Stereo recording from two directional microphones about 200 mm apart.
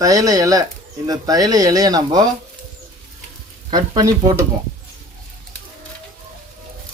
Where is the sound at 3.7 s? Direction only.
20° right (ahead or behind).